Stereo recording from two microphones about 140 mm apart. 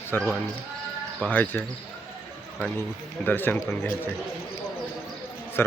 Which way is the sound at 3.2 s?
15° left (ahead or behind).